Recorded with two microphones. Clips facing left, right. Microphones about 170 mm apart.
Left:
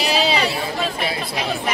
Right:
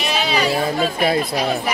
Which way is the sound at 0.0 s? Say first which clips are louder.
Left 1 dB; 30° left (ahead or behind).